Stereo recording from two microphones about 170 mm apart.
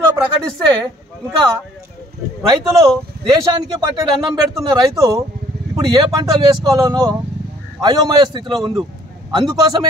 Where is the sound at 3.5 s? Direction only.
25° right (ahead or behind).